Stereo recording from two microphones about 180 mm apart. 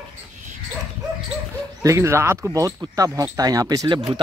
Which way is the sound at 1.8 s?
15° right (ahead or behind).